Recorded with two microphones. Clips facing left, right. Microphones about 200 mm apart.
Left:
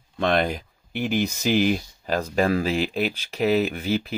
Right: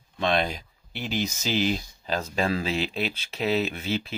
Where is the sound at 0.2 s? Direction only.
55° left (ahead or behind).